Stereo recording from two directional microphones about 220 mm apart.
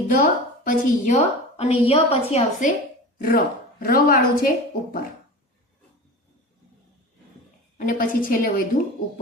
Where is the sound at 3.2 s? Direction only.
40° left (ahead or behind).